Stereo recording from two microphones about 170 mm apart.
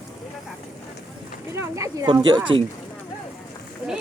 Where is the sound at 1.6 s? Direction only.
20° right (ahead or behind).